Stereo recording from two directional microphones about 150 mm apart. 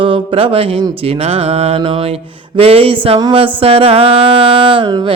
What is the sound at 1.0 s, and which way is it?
Mantra, 40° right (ahead or behind).